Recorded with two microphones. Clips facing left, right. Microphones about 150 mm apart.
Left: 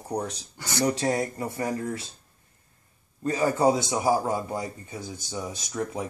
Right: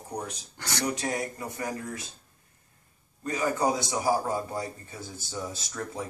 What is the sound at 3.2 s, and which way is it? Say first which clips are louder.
A man's voice: left 4 dB; 30° left (ahead or behind).